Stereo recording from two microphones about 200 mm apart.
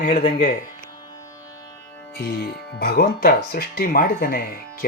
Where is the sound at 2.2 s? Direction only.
50° left (ahead or behind).